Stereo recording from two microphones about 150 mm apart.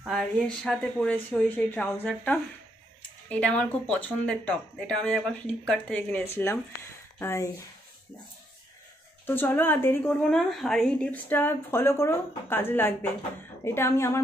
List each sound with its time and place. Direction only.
0.0 s speech: centre (ahead or behind); by 7.4 s 15° left (ahead or behind)
9.2 s speech: 15° left (ahead or behind)
10.3 s speech: centre (ahead or behind); by 14.2 s 20° left (ahead or behind)